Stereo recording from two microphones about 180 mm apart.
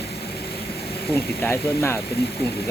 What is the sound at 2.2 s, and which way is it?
Speech, 60° left (ahead or behind).